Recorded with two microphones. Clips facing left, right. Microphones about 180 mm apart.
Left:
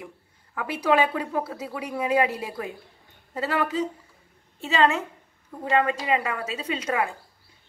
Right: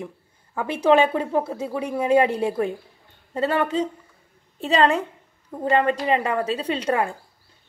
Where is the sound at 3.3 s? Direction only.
30° right (ahead or behind).